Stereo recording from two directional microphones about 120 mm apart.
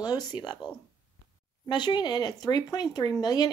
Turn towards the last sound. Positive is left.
turn(degrees=35)  # may be behind; listen again after turning